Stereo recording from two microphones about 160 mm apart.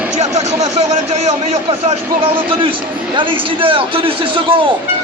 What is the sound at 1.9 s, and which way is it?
A man's voice, 35° right (ahead or behind).